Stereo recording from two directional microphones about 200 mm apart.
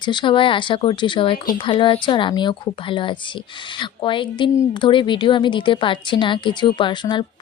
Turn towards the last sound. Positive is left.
turn(degrees=25)  # may be behind; listen again after turning